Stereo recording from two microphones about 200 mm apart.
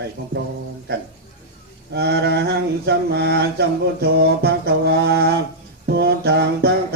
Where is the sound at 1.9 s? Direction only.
55° right (ahead or behind).